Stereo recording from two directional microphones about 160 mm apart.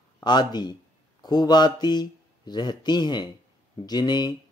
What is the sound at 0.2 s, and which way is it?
Speech, 25° left (ahead or behind).